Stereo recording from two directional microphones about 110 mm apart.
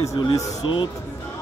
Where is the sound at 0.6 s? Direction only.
50° left (ahead or behind).